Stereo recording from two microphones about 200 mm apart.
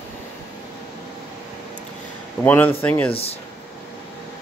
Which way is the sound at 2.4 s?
10° left (ahead or behind).